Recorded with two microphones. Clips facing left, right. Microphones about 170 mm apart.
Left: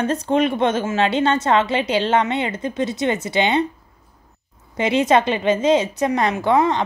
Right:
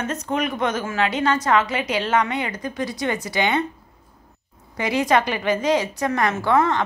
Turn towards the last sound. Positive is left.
turn(degrees=20)  # may be behind; listen again after turning